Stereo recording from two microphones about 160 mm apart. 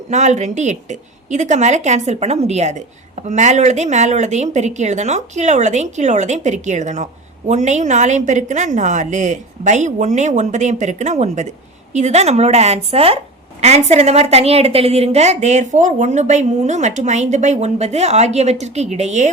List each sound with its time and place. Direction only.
0.1 s a woman's voice: 45° right (ahead or behind)